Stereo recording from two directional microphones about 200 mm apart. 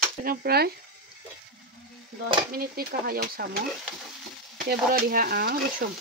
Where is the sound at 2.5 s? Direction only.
50° right (ahead or behind).